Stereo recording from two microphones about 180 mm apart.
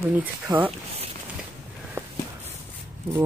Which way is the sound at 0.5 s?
20° right (ahead or behind).